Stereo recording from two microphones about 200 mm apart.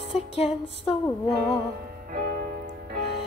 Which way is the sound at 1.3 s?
45° right (ahead or behind).